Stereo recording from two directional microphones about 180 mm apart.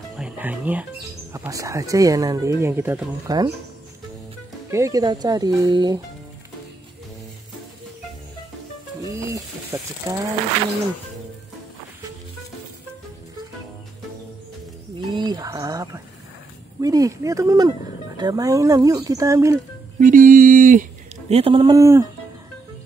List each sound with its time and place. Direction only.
0.1 s speech: 5° right (ahead or behind)
4.6 s speech: 15° right (ahead or behind)
9.1 s sizzle: 15° right (ahead or behind)
10.1 s speech: 15° right (ahead or behind)
15.0 s speech: 25° right (ahead or behind)
20.0 s speech: 50° right (ahead or behind)
21.3 s speech: 30° right (ahead or behind)